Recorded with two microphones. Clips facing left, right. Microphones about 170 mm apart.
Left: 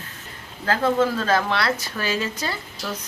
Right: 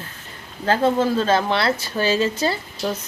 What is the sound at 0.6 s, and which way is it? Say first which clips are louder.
A woman's voice: right 2 dB; 30° right (ahead or behind).